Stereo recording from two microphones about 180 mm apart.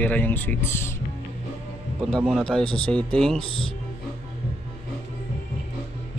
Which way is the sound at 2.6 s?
30° left (ahead or behind).